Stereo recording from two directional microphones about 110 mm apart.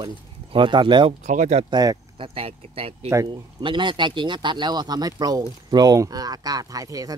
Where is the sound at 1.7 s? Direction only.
35° right (ahead or behind).